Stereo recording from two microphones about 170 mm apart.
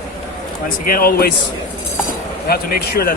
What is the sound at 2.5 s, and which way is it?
Speech, 60° left (ahead or behind).